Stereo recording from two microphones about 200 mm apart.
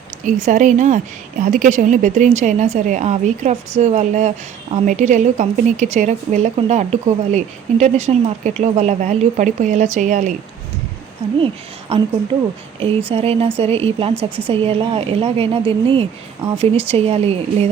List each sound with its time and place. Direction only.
0.4 s a woman's voice: 35° right (ahead or behind)
11.3 s a woman's voice: 25° right (ahead or behind)
13.1 s speech: 30° right (ahead or behind)
14.1 s speech: 10° right (ahead or behind)
14.4 s a woman's voice: 30° right (ahead or behind)